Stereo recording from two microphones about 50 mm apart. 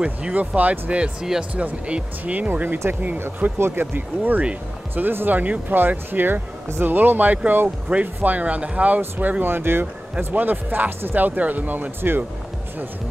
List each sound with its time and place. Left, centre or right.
0.0 s speech: right
2.4 s speech: right
3.5 s speech: right
3.9 s speech: right
10.3 s speech: right